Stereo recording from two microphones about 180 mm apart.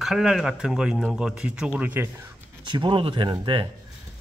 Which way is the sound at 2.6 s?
25° right (ahead or behind).